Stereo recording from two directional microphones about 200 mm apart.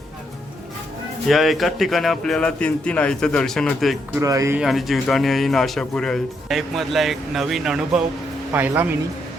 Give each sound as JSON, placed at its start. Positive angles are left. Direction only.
{"t": 1.3, "sound": "speech", "side_deg": 0}
{"t": 4.1, "sound": "speech", "side_deg": -15}
{"t": 4.6, "sound": "speech", "side_deg": 0}